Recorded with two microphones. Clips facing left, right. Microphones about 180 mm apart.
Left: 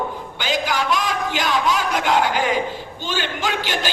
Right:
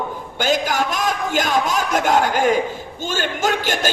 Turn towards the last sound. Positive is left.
turn(degrees=-45)  # may be behind; listen again after turning